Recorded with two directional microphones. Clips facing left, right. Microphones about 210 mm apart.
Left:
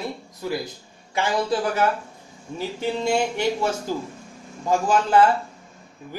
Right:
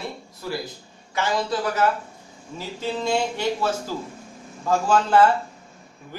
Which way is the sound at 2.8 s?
10° left (ahead or behind).